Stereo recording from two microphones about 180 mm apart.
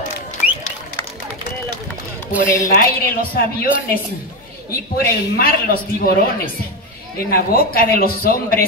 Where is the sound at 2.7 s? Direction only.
55° left (ahead or behind).